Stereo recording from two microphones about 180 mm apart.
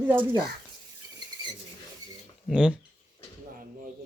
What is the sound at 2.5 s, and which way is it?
Speech, 5° right (ahead or behind).